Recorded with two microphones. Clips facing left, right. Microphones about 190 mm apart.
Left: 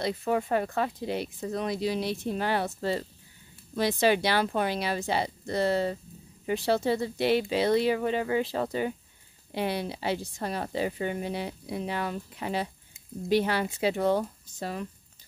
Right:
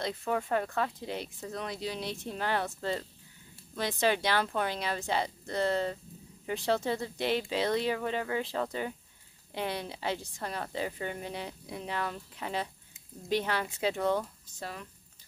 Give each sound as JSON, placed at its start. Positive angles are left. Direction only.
{"t": 0.0, "sound": "speech", "side_deg": 10}
{"t": 14.1, "sound": "speech", "side_deg": 30}